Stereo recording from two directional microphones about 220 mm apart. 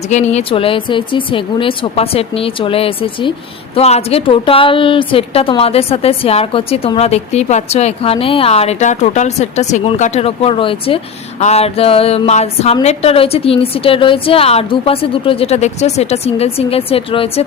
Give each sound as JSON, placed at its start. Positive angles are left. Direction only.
{"t": 0.1, "sound": "a woman's voice", "side_deg": 30}